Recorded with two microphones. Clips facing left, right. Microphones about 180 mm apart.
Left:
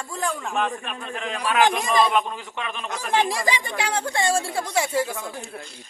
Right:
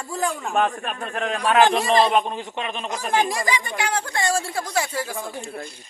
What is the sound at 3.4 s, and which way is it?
Speech, 30° left (ahead or behind).